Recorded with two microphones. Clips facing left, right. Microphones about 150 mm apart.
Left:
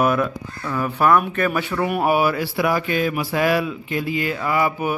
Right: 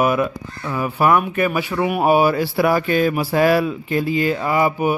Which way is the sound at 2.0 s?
25° right (ahead or behind).